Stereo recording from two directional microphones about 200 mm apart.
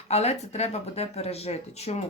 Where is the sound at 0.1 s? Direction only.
35° left (ahead or behind).